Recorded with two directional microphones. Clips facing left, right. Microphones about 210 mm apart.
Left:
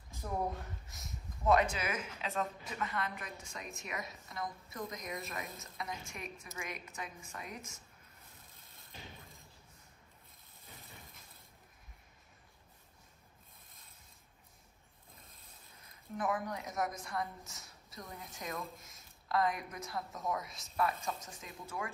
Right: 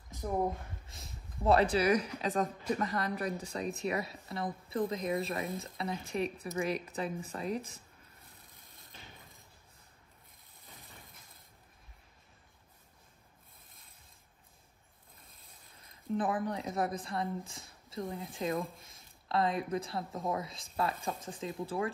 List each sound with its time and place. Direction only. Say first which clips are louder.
0.8 s speech: left 1 dB; 30° right (ahead or behind)
10.6 s a sound: even; 15° right (ahead or behind)
15.8 s speech: right 5 dB; 30° right (ahead or behind)